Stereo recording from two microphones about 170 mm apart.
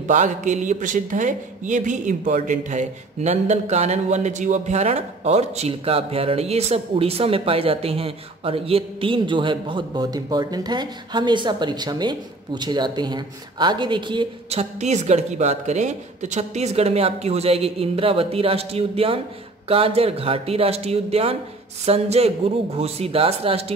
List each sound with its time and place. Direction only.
0.0 s speech: 45° right (ahead or behind)